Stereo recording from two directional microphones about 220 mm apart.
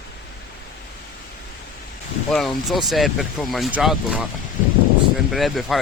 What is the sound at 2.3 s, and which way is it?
Speech, centre (ahead or behind).